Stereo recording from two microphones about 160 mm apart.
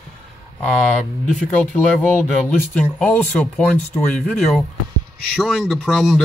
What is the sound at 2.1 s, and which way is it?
Speech, 10° left (ahead or behind).